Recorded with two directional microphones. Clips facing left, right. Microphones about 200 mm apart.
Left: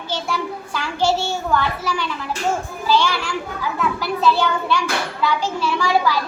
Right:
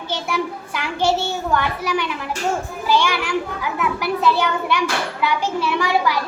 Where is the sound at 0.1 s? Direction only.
20° right (ahead or behind).